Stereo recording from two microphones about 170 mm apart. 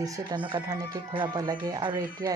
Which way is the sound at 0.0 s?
25° right (ahead or behind).